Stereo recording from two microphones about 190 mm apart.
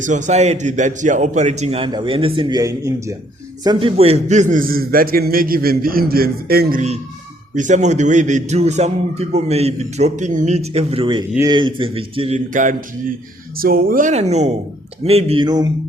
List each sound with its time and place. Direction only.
0.0 s a man's voice: 40° right (ahead or behind)
7.5 s a man's voice: 40° right (ahead or behind)
12.5 s a man's voice: 45° right (ahead or behind); by 15.7 s 20° right (ahead or behind)